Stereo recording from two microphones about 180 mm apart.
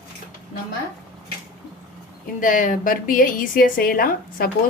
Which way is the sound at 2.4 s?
45° left (ahead or behind).